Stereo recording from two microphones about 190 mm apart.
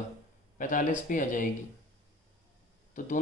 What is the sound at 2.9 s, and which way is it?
Speech, 40° left (ahead or behind).